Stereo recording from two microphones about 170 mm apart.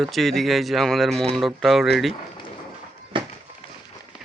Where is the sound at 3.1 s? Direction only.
30° right (ahead or behind).